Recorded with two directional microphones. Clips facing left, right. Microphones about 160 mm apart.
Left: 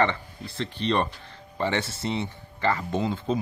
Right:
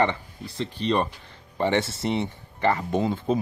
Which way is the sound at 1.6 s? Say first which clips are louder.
Right 4 dB; 25° right (ahead or behind).